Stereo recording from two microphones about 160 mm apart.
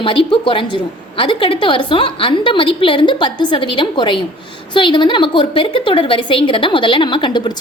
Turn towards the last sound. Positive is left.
turn(degrees=30)  # may be behind; listen again after turning